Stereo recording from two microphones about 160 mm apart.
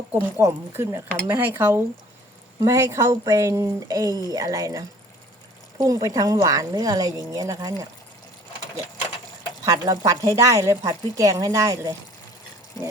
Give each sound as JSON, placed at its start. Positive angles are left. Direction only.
{"t": 0.1, "sound": "a woman's voice", "side_deg": -15}
{"t": 9.6, "sound": "a woman's voice", "side_deg": -20}